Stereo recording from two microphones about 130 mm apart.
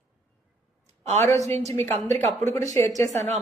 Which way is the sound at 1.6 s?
55° right (ahead or behind).